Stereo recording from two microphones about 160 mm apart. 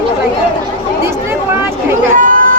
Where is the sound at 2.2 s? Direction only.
60° right (ahead or behind).